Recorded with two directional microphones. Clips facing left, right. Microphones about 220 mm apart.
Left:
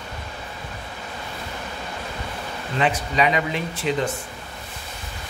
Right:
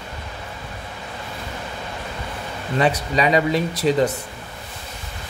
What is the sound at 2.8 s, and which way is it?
Speech, 40° right (ahead or behind).